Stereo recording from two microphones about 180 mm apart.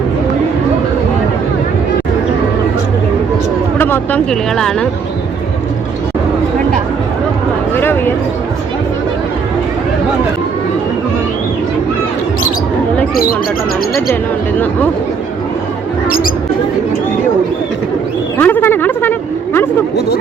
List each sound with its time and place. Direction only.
3.8 s speech: 10° left (ahead or behind)
7.8 s speech: 10° left (ahead or behind)
16.0 s rodents: 50° left (ahead or behind)
18.3 s a sound: 10° left (ahead or behind)